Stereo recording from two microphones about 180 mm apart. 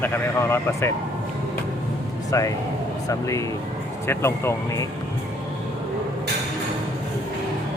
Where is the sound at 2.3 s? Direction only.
20° left (ahead or behind).